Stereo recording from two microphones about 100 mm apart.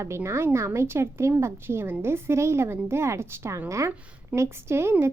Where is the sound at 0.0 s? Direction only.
30° right (ahead or behind).